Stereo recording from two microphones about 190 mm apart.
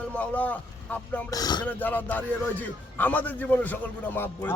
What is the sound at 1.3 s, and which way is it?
Speech, 20° left (ahead or behind).